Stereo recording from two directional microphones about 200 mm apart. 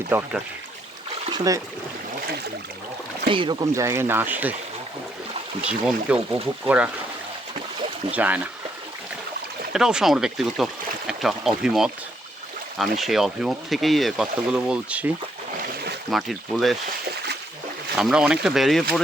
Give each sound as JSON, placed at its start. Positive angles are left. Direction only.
{"t": 0.1, "sound": "speech", "side_deg": -10}
{"t": 1.3, "sound": "speech", "side_deg": -15}
{"t": 3.2, "sound": "speech", "side_deg": -25}
{"t": 6.1, "sound": "speech", "side_deg": -5}
{"t": 8.1, "sound": "speech", "side_deg": -10}
{"t": 9.7, "sound": "speech", "side_deg": -5}
{"t": 15.6, "sound": "boat", "side_deg": -55}
{"t": 16.0, "sound": "speech", "side_deg": 0}
{"t": 17.9, "sound": "speech", "side_deg": -5}